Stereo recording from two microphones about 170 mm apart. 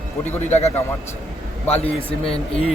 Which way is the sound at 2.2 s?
35° left (ahead or behind).